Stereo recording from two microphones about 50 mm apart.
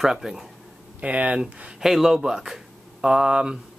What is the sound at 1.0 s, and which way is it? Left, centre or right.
Speech, right.